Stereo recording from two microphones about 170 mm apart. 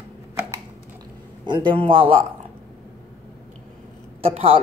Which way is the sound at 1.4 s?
25° right (ahead or behind).